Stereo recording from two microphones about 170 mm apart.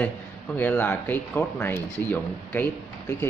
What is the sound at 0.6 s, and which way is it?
Speech, 10° left (ahead or behind).